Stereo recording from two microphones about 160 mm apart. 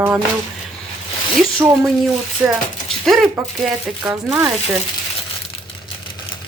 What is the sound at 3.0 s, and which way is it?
A woman's voice, centre (ahead or behind).